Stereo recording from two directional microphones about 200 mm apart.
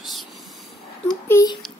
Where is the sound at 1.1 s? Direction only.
15° left (ahead or behind).